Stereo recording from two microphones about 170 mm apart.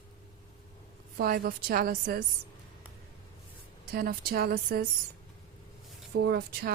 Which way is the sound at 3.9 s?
60° right (ahead or behind).